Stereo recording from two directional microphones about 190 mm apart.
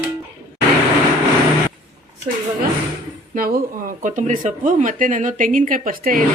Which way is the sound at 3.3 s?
50° right (ahead or behind).